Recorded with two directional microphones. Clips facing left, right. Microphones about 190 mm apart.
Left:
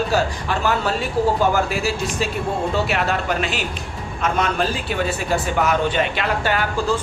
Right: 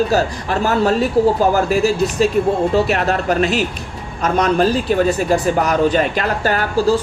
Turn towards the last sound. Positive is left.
turn(degrees=-40)  # may be behind; listen again after turning